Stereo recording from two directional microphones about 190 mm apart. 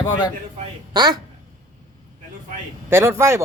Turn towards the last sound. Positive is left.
turn(degrees=-15)  # may be behind; listen again after turning